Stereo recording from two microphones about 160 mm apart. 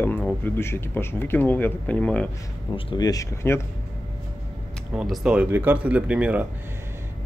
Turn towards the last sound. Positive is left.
turn(degrees=-10)  # may be behind; listen again after turning